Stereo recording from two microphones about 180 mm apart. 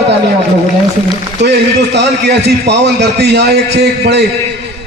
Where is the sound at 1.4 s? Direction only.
70° right (ahead or behind).